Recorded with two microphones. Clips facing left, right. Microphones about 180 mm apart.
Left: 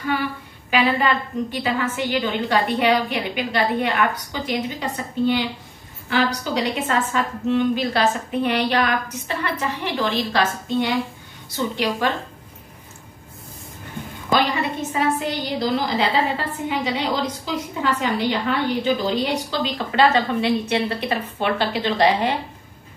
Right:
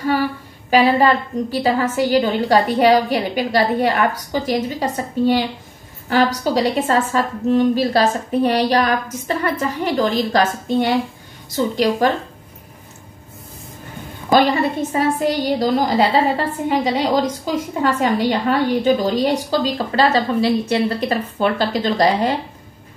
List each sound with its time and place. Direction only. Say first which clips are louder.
0.7 s a woman's voice: right 6 dB; 40° right (ahead or behind)
14.5 s a woman's voice: right 5 dB; 45° right (ahead or behind)